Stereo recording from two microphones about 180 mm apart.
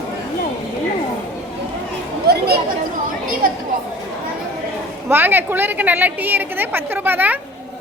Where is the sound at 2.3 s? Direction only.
65° right (ahead or behind).